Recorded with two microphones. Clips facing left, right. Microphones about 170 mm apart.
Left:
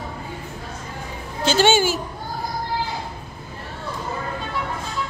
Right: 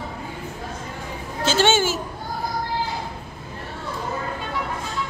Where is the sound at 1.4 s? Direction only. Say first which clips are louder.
Left 2 dB; centre (ahead or behind).